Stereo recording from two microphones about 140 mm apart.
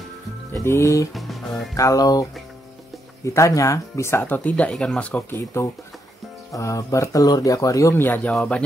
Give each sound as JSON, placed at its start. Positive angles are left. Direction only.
{"t": 0.5, "sound": "speech", "side_deg": 20}
{"t": 1.1, "sound": "music", "side_deg": 0}
{"t": 1.8, "sound": "speech", "side_deg": 25}
{"t": 3.3, "sound": "speech", "side_deg": 20}